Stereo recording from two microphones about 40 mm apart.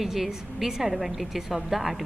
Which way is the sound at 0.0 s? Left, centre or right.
Centre.